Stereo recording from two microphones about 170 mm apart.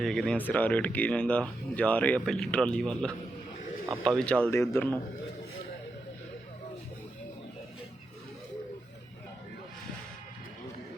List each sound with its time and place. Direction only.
0.0 s speech: 5° left (ahead or behind)
4.5 s speech: 15° left (ahead or behind)